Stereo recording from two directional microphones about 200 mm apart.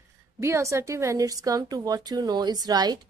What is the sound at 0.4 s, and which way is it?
A woman's voice, 15° right (ahead or behind).